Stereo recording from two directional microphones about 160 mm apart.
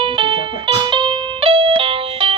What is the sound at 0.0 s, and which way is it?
Music, 35° right (ahead or behind).